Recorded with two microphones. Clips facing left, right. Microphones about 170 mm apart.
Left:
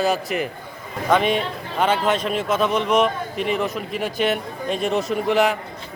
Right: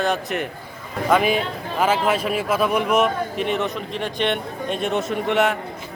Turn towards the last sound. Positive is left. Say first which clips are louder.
# left 1 dB
turn(degrees=0)  # may be behind; listen again after turning